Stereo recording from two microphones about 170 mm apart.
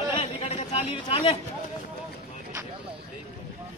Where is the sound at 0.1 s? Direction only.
30° left (ahead or behind).